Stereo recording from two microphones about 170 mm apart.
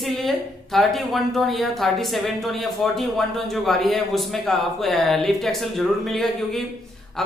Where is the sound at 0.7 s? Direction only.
Centre (ahead or behind).